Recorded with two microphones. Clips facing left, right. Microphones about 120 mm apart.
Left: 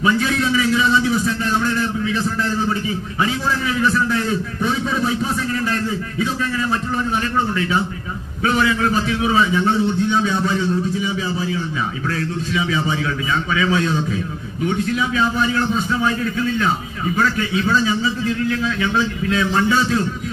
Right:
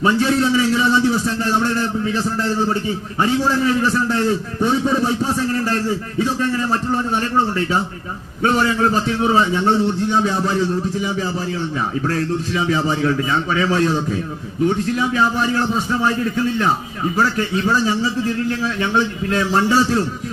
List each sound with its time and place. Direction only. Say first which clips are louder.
0.0 s a man's voice: right 2 dB; 30° right (ahead or behind)
10.2 s a man's voice: right 1 dB; 40° right (ahead or behind)
12.1 s a man's voice: right 2 dB; 45° right (ahead or behind)
15.6 s a man's voice: even; 20° right (ahead or behind)
16.0 s a man's voice: right 1 dB; 30° right (ahead or behind)